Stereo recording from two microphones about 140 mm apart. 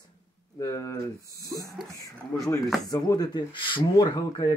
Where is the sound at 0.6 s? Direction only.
25° left (ahead or behind).